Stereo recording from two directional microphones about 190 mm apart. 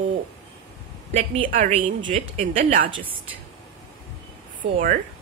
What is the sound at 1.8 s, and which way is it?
Speech, 25° right (ahead or behind).